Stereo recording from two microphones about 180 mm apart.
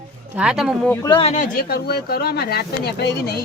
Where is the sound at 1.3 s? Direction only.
45° left (ahead or behind).